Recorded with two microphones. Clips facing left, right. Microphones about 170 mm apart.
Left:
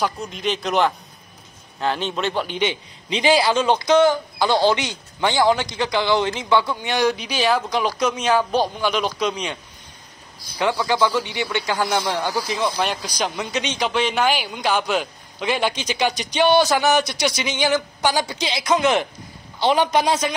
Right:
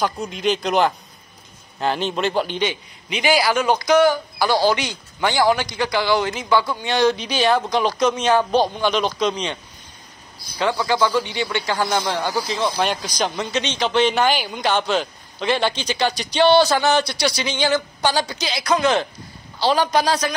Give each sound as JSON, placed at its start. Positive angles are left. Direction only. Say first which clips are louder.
{"t": 0.0, "sound": "a man's voice", "louder": "right 2 dB", "side_deg": 0}
{"t": 2.6, "sound": "a man's voice", "louder": "even", "side_deg": 25}
{"t": 10.9, "sound": "a man's voice", "louder": "right 1 dB", "side_deg": 15}
{"t": 12.2, "sound": "speech", "louder": "right 1 dB", "side_deg": -15}
{"t": 12.7, "sound": "a man's voice", "louder": "right 2 dB", "side_deg": 5}